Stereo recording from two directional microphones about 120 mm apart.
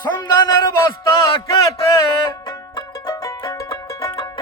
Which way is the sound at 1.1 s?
45° left (ahead or behind).